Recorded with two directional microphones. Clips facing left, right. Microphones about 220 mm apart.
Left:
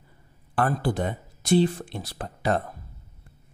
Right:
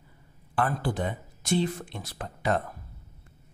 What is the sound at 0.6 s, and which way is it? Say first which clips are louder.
Speech: left 3 dB; 40° left (ahead or behind).